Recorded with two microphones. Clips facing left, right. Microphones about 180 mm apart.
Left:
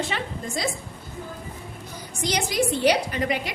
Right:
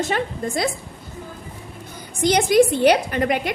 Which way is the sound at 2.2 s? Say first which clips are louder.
Right 9 dB; 55° right (ahead or behind).